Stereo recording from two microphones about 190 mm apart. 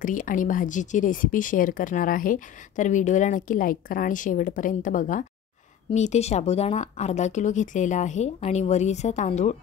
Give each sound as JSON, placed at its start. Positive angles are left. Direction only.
{"t": 0.0, "sound": "speech", "side_deg": 45}